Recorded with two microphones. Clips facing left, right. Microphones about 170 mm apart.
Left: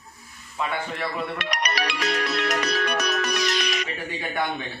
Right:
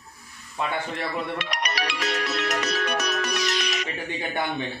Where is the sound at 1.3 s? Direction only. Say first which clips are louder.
Left 1 dB; 55° left (ahead or behind).